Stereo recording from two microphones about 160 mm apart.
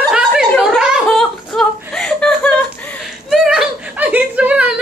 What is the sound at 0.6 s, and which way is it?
Chuckle, 5° right (ahead or behind).